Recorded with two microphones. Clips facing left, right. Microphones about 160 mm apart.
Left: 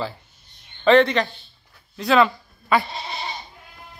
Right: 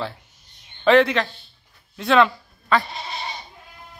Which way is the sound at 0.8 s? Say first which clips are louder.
Left 1 dB; 5° right (ahead or behind).